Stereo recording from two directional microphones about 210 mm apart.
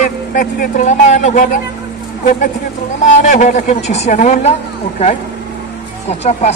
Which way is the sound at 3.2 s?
35° left (ahead or behind).